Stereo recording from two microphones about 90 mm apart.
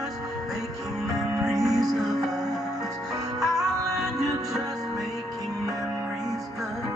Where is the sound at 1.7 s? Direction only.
40° right (ahead or behind).